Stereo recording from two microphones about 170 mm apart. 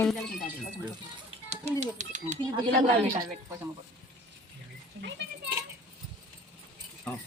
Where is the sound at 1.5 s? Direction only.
40° right (ahead or behind).